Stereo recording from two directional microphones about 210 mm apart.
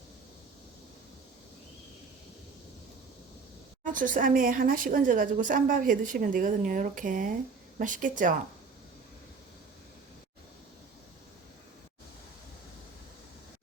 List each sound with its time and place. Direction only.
3.8 s a woman's voice: 40° right (ahead or behind)